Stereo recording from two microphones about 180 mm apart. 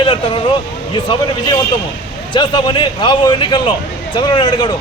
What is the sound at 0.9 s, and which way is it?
Speech, 25° left (ahead or behind).